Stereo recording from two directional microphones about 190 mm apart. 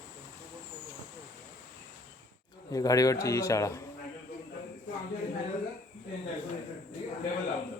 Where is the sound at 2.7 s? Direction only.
20° left (ahead or behind).